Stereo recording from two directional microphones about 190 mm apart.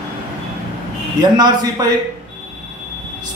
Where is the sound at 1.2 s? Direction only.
20° right (ahead or behind).